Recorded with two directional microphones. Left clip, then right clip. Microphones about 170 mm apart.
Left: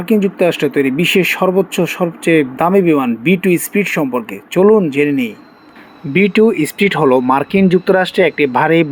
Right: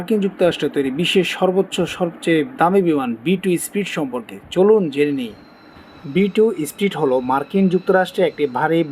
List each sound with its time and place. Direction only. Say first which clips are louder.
0.0 s speech: left 4 dB; 5° left (ahead or behind)
6.3 s speech: left 5 dB; 5° left (ahead or behind)